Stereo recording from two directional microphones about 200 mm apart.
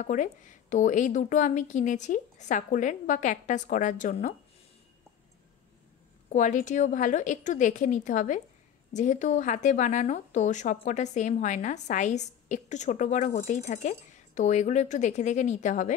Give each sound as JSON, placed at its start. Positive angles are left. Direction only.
{"t": 0.0, "sound": "a woman's voice", "side_deg": 40}
{"t": 6.3, "sound": "a woman's voice", "side_deg": 35}